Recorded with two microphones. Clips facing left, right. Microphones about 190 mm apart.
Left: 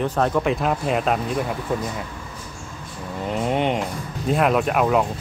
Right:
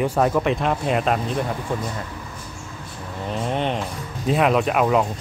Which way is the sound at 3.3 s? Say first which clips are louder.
Left 2 dB; 15° left (ahead or behind).